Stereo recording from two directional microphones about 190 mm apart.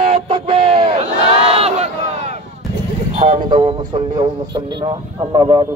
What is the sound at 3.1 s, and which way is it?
Speech, 30° right (ahead or behind).